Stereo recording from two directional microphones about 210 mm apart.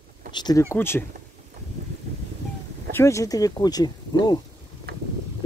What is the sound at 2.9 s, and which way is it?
Speech, 15° left (ahead or behind).